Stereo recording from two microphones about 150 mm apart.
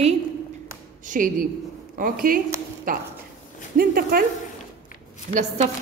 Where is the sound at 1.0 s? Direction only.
60° right (ahead or behind); by 4.2 s 80° right.